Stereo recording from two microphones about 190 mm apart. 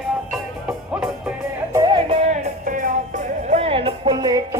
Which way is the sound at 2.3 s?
45° right (ahead or behind).